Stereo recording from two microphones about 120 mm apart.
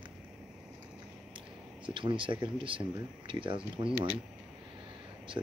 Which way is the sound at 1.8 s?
45° right (ahead or behind).